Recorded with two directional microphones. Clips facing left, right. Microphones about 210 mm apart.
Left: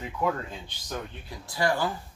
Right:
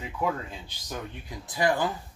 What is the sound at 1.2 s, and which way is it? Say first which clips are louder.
Speech: right 2 dB; 20° right (ahead or behind).